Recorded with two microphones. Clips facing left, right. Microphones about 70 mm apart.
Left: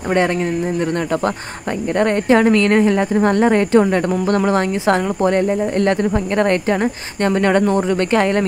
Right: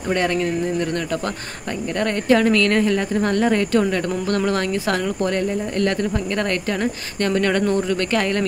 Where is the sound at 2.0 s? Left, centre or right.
Left.